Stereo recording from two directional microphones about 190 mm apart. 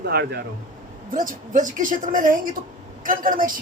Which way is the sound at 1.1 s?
45° right (ahead or behind).